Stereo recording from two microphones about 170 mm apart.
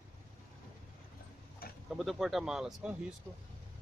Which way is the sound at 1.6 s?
65° left (ahead or behind).